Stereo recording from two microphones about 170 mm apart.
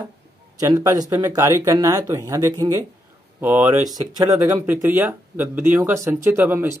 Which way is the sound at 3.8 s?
20° right (ahead or behind).